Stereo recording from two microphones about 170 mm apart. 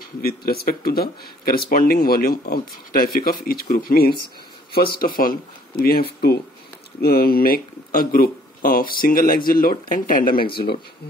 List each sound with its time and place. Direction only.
0.2 s speech: 65° left (ahead or behind)